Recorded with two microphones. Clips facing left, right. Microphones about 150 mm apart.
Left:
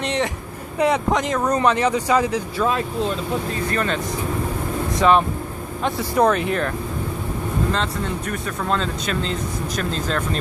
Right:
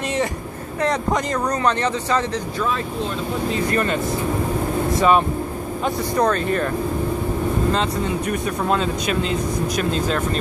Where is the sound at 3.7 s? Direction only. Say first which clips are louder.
Right 2 dB; 5° right (ahead or behind).